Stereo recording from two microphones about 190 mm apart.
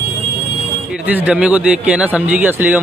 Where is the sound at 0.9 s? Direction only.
10° right (ahead or behind).